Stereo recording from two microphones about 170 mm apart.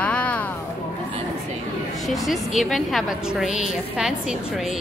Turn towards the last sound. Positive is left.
turn(degrees=-5)  # may be behind; listen again after turning